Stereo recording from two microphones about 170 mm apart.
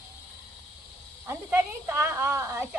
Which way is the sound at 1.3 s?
15° right (ahead or behind).